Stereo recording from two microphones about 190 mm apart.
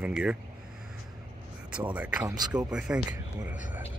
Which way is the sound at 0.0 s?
5° right (ahead or behind).